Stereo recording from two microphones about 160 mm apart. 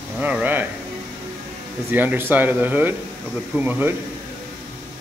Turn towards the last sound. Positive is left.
turn(degrees=-10)  # may be behind; listen again after turning